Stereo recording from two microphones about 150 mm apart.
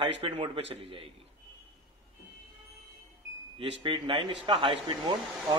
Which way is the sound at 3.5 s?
35° right (ahead or behind).